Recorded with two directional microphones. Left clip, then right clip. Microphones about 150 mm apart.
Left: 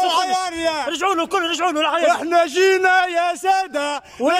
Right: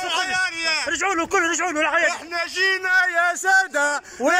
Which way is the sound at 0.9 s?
15° left (ahead or behind).